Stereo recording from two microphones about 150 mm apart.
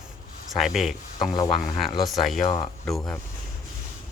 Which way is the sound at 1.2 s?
25° left (ahead or behind).